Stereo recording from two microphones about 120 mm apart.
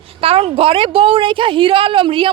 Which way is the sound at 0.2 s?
50° right (ahead or behind).